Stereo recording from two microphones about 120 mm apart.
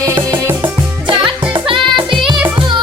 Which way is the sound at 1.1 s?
45° right (ahead or behind).